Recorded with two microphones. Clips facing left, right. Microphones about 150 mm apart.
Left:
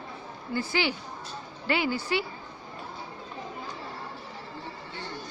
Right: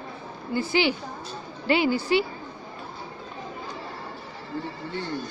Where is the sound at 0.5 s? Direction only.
20° right (ahead or behind).